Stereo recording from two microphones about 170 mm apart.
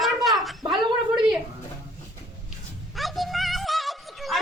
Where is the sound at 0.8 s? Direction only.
25° right (ahead or behind).